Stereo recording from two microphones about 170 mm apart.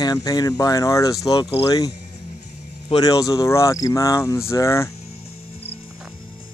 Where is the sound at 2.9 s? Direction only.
20° left (ahead or behind).